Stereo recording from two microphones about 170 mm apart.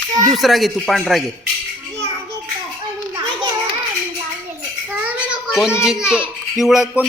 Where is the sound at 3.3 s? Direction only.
25° right (ahead or behind).